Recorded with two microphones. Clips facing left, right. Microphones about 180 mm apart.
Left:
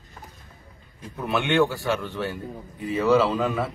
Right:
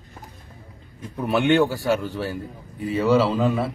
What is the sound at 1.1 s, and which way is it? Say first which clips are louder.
A man's voice: right 3 dB; 35° right (ahead or behind).